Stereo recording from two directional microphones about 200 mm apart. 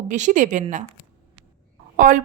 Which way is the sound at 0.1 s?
40° right (ahead or behind).